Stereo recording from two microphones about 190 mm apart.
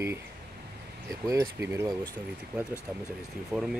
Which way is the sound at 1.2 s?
15° right (ahead or behind).